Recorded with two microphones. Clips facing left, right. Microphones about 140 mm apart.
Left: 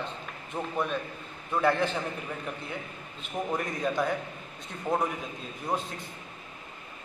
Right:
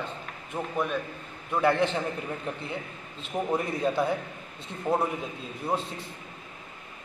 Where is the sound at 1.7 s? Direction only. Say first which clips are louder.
Right 3 dB; 20° right (ahead or behind).